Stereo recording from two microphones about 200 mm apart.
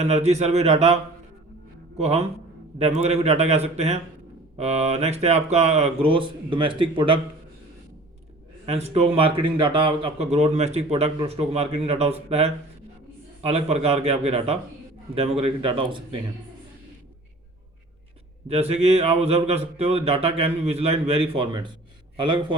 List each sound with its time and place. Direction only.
0.0 s speech: 35° right (ahead or behind)
2.0 s speech: 35° right (ahead or behind)
8.6 s a man's voice: 30° right (ahead or behind)
18.4 s a man's voice: 30° right (ahead or behind)